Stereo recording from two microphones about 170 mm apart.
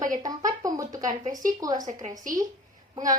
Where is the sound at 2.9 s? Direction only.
20° right (ahead or behind).